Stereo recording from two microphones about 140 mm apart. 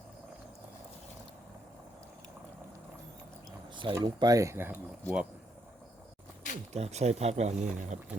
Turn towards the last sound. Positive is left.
turn(degrees=-55)  # may be behind; listen again after turning